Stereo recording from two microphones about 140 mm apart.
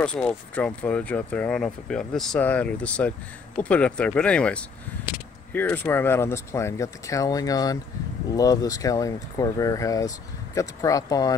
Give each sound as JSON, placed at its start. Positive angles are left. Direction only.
{"t": 0.0, "sound": "speech", "side_deg": 5}